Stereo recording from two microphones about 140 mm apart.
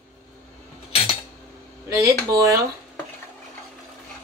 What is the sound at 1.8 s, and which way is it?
Speech, 20° right (ahead or behind).